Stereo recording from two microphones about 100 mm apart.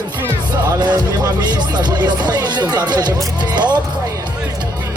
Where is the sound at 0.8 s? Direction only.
45° right (ahead or behind).